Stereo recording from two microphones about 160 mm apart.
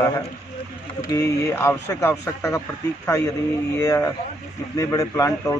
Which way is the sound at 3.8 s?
20° left (ahead or behind).